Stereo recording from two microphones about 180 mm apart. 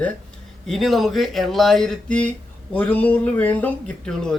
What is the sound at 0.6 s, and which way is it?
Speech, centre (ahead or behind).